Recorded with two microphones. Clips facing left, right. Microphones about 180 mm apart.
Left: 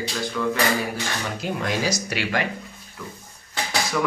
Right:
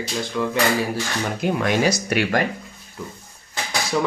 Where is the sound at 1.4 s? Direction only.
60° right (ahead or behind).